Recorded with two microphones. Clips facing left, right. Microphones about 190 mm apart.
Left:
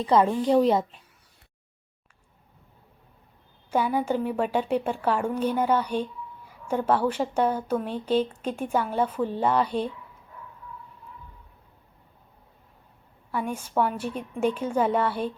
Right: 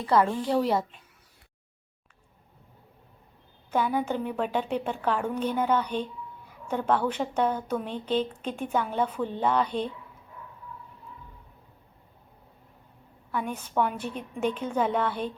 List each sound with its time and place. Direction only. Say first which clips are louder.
0.0 s a woman's voice: left 3 dB; 20° left (ahead or behind)
3.7 s a woman's voice: left 2 dB; 10° left (ahead or behind)
13.5 s a woman's voice: left 2 dB; 10° left (ahead or behind)